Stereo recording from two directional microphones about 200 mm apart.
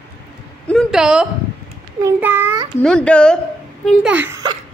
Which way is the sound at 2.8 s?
5° left (ahead or behind).